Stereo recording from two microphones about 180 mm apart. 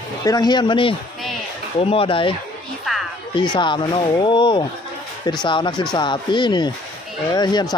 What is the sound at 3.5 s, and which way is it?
Speech, 25° left (ahead or behind).